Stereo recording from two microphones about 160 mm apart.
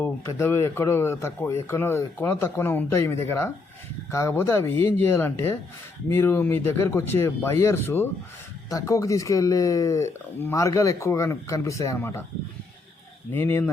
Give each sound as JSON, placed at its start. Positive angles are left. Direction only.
{"t": 0.0, "sound": "speech", "side_deg": 15}
{"t": 13.3, "sound": "speech", "side_deg": 15}